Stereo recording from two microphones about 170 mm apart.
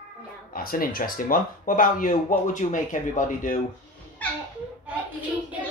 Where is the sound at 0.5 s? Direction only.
55° left (ahead or behind).